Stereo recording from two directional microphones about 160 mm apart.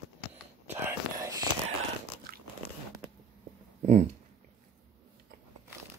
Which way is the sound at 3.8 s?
45° right (ahead or behind).